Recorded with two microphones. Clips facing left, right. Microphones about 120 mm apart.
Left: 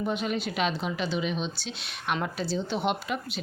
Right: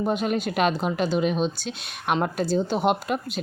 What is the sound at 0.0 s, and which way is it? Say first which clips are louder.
Speech: right 5 dB; 45° right (ahead or behind).